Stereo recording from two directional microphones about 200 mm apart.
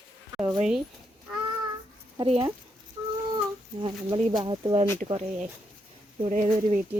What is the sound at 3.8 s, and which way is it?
Speech, 25° right (ahead or behind).